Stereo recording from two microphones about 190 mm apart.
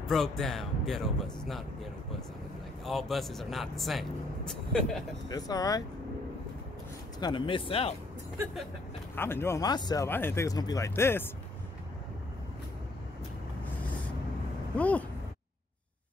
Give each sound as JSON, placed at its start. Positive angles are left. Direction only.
{"t": 0.0, "sound": "speech", "side_deg": 0}
{"t": 5.3, "sound": "speech", "side_deg": 20}
{"t": 7.2, "sound": "speech", "side_deg": 25}
{"t": 9.1, "sound": "speech", "side_deg": 10}
{"t": 14.8, "sound": "speech", "side_deg": 5}